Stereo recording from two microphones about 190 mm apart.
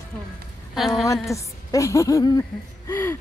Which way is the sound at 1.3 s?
15° left (ahead or behind).